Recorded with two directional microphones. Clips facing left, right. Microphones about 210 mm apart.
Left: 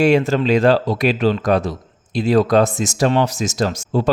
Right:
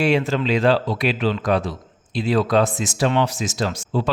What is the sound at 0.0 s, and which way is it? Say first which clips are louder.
Speech: left 5 dB; 45° left (ahead or behind).